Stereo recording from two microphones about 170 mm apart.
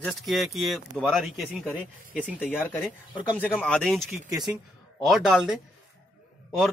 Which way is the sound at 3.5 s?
Centre (ahead or behind).